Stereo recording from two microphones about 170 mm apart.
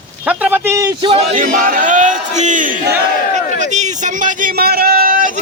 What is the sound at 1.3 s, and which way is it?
Speech, 55° right (ahead or behind).